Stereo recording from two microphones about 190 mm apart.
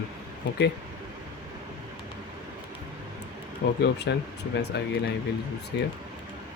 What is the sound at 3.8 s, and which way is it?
Speech, 60° left (ahead or behind).